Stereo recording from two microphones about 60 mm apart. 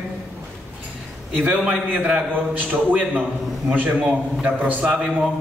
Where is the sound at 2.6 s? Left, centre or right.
Right.